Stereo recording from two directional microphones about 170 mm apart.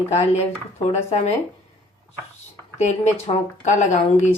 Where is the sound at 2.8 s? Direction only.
45° left (ahead or behind).